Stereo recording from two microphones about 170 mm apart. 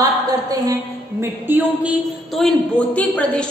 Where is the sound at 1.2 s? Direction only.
10° right (ahead or behind).